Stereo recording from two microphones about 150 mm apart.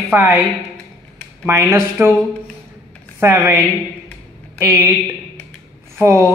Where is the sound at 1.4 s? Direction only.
15° right (ahead or behind).